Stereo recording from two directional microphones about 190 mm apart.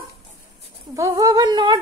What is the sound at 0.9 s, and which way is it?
Speech, 15° right (ahead or behind).